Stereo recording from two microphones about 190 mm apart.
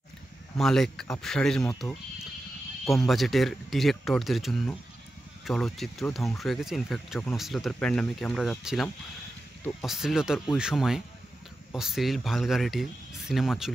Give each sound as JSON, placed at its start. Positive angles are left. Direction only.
{"t": 0.6, "sound": "speech", "side_deg": 0}